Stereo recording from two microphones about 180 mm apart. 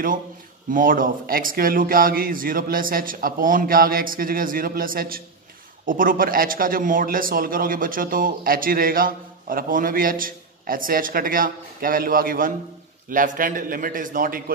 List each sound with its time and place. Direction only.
0.7 s a man's voice: 50° right (ahead or behind)